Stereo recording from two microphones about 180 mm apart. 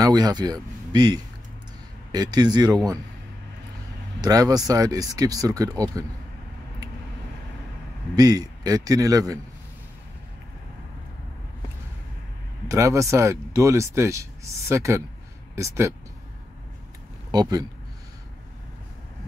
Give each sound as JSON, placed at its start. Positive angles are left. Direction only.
{"t": 0.0, "sound": "speech", "side_deg": -20}
{"t": 4.2, "sound": "speech", "side_deg": -20}
{"t": 8.2, "sound": "speech", "side_deg": -20}
{"t": 12.6, "sound": "speech", "side_deg": -15}
{"t": 17.3, "sound": "a man's voice", "side_deg": -20}